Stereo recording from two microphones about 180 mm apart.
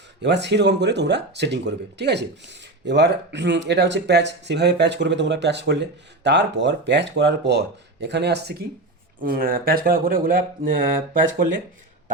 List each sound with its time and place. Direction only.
0.2 s speech: 70° right (ahead or behind)
9.2 s speech: 55° right (ahead or behind)